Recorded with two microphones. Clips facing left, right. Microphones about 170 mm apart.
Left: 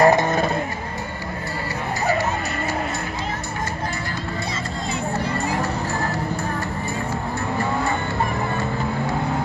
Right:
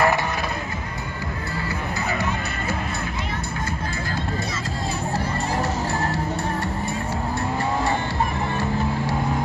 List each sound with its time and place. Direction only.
0.0 s music: 40° left (ahead or behind)